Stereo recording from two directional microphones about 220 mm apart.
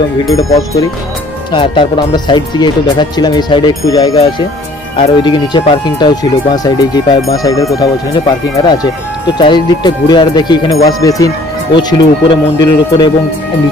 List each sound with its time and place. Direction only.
0.3 s speech: 15° left (ahead or behind)
12.3 s speech: 20° left (ahead or behind)